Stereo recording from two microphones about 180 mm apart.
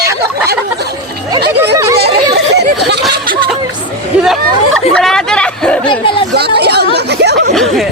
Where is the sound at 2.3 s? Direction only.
65° right (ahead or behind).